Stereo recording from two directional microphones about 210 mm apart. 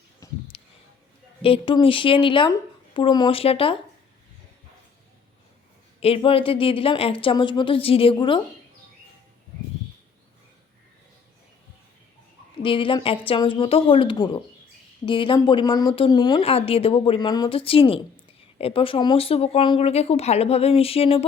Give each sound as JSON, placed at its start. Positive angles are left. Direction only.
{"t": 0.2, "sound": "a sound", "side_deg": 15}
{"t": 1.4, "sound": "speech", "side_deg": 25}
{"t": 6.0, "sound": "speech", "side_deg": 25}
{"t": 12.6, "sound": "speech", "side_deg": 25}